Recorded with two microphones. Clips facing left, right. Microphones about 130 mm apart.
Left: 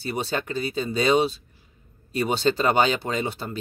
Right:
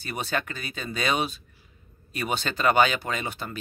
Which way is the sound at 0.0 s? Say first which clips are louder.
Left 3 dB; 30° left (ahead or behind).